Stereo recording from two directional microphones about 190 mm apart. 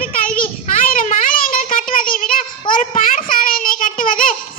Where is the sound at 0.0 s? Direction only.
50° left (ahead or behind).